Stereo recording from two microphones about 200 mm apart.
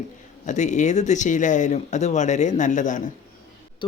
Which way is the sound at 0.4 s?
35° left (ahead or behind).